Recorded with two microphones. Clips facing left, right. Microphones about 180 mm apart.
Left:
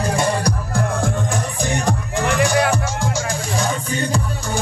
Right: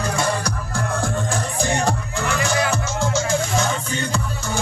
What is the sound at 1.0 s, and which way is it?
Music, 20° left (ahead or behind).